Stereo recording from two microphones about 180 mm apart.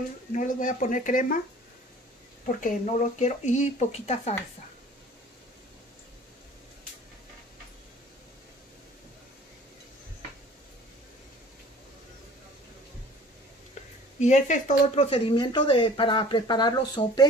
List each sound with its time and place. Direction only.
0.3 s speech: 45° left (ahead or behind)
2.4 s speech: 45° left (ahead or behind)
14.2 s speech: 40° left (ahead or behind)
15.0 s speech: 30° left (ahead or behind)